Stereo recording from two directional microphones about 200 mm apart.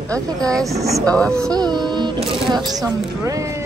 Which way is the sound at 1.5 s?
20° right (ahead or behind).